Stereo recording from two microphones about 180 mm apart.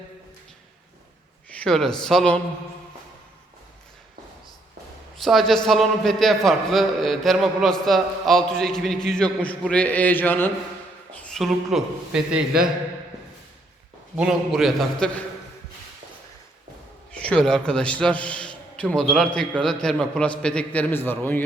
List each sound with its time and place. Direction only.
1.5 s speech: 5° left (ahead or behind)
5.1 s a man's voice: centre (ahead or behind)
14.2 s a man's voice: centre (ahead or behind)
17.1 s a man's voice: 5° left (ahead or behind)